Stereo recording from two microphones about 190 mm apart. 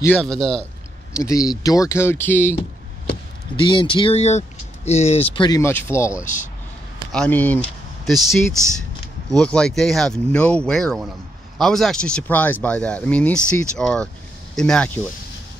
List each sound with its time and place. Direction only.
0.0 s speech: 5° left (ahead or behind)
1.1 s speech: 15° left (ahead or behind)
3.5 s speech: 25° left (ahead or behind); by 8.4 s centre (ahead or behind)
9.4 s speech: 5° left (ahead or behind)